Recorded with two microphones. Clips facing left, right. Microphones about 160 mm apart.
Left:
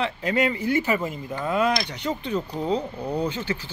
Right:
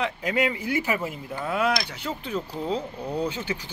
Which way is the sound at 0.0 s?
10° right (ahead or behind).